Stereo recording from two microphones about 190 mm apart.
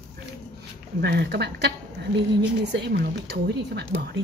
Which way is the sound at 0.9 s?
60° right (ahead or behind).